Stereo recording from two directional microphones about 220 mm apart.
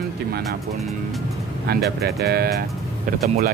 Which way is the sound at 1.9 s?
45° right (ahead or behind).